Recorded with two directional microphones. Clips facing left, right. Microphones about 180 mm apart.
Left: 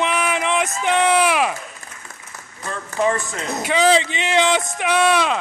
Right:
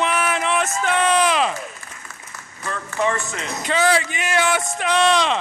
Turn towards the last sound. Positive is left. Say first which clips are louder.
# left 1 dB
turn(degrees=5)  # may be behind; listen again after turning